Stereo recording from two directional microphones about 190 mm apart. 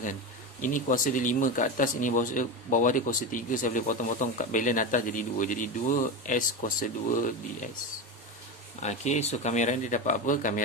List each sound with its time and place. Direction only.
0.6 s speech: 45° left (ahead or behind)
8.8 s speech: 35° left (ahead or behind)